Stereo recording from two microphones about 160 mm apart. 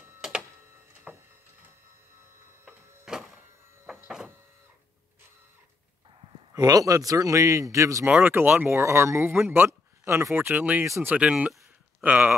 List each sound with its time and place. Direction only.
0.2 s printer: 5° right (ahead or behind)
1.1 s a sound: 10° right (ahead or behind)
2.6 s printer: 5° right (ahead or behind)
3.8 s sliding door: 10° right (ahead or behind)
6.5 s a man's voice: 20° right (ahead or behind)
9.4 s a sound: 15° right (ahead or behind)
10.3 s speech: 10° right (ahead or behind)